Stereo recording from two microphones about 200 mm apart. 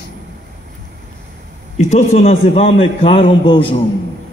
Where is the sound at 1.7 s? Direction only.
35° left (ahead or behind).